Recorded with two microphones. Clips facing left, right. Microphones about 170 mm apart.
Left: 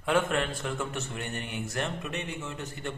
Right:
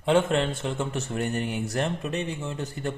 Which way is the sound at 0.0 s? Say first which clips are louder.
Right 5 dB; 25° right (ahead or behind).